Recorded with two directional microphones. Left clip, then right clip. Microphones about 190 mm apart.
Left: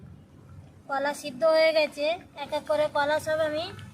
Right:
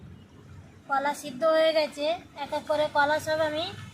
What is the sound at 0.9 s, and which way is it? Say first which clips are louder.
A woman's voice: right 1 dB; 15° left (ahead or behind).